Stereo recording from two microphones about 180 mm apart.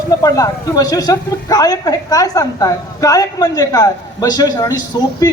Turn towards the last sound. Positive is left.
turn(degrees=20)  # may be behind; listen again after turning